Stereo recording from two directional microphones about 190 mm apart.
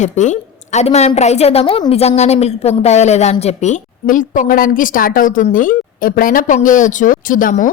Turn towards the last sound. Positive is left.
turn(degrees=45)  # may be behind; listen again after turning